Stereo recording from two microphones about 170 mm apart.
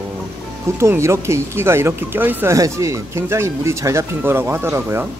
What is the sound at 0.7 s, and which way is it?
Speech, 15° right (ahead or behind).